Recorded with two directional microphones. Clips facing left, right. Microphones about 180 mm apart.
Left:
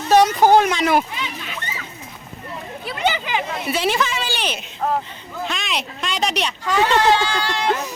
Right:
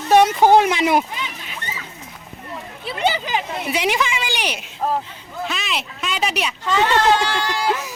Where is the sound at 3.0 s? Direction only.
35° right (ahead or behind).